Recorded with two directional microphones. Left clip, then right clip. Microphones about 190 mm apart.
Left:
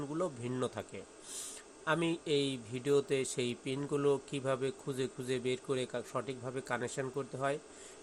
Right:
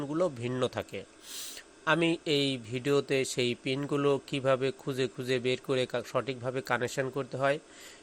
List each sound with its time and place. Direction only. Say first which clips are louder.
0.0 s speech: right 7 dB; 25° right (ahead or behind)